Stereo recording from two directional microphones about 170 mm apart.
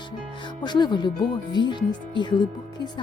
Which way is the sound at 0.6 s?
25° left (ahead or behind).